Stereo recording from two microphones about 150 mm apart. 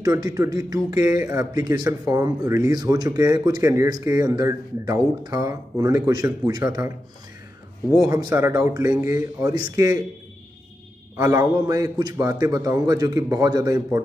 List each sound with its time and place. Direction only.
0.0 s speech: 25° right (ahead or behind)
7.9 s speech: 25° right (ahead or behind)
11.1 s speech: 20° right (ahead or behind)